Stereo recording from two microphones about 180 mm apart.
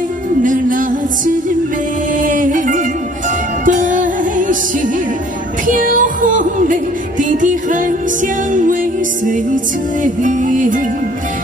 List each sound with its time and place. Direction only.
0.4 s music: 45° right (ahead or behind)
10.0 s music: 45° right (ahead or behind)